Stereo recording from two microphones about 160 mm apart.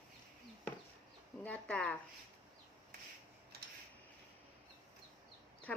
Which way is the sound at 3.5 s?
90° right.